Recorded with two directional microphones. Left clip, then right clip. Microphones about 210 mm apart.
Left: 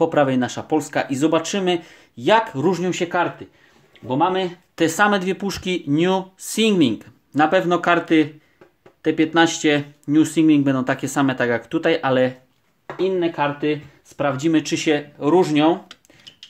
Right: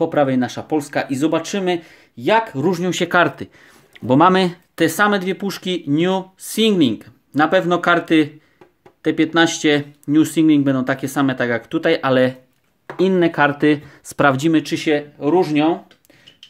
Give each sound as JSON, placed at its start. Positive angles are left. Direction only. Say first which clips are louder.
{"t": 0.0, "sound": "speech", "louder": "right 1 dB", "side_deg": -5}
{"t": 4.1, "sound": "speech", "louder": "right 6 dB", "side_deg": -45}
{"t": 4.7, "sound": "speech", "louder": "right 1 dB", "side_deg": -15}
{"t": 12.9, "sound": "speech", "louder": "right 4 dB", "side_deg": -45}
{"t": 14.5, "sound": "speech", "louder": "right 2 dB", "side_deg": -10}